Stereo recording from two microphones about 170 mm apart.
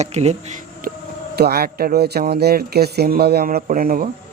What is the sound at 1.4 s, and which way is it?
Speech, 65° right (ahead or behind).